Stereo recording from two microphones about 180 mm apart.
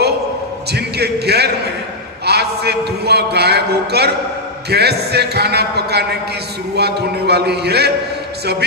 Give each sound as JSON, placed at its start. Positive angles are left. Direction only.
{"t": 0.7, "sound": "a man's voice", "side_deg": -65}